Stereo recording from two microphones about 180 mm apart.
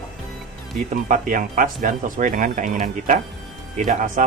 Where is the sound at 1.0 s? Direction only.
45° right (ahead or behind).